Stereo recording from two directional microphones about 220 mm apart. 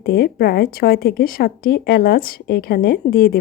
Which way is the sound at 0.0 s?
45° left (ahead or behind).